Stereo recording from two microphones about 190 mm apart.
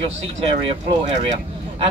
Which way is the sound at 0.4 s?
30° right (ahead or behind).